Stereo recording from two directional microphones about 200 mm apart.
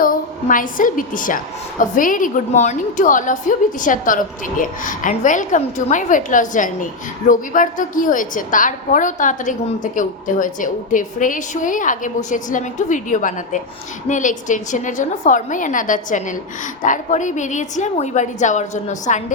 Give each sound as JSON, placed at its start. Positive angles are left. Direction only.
{"t": 0.0, "sound": "a woman's voice", "side_deg": 45}